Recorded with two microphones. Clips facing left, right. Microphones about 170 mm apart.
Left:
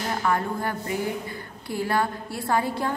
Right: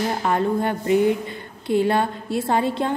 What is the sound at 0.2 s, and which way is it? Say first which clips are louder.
A woman's voice: right 4 dB; 25° right (ahead or behind).